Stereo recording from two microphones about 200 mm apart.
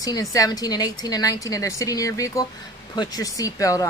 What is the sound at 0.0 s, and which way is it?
A woman's voice, 15° left (ahead or behind).